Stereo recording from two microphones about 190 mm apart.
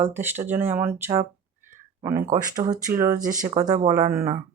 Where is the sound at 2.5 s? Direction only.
20° right (ahead or behind).